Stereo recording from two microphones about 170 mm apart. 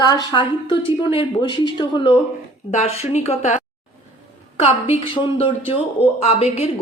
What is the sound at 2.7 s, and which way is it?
Speech, 40° left (ahead or behind).